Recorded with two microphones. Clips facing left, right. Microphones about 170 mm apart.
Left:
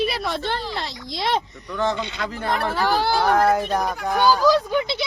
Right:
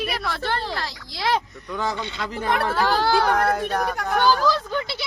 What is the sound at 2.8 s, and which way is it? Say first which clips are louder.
Speech: even; 15° left (ahead or behind).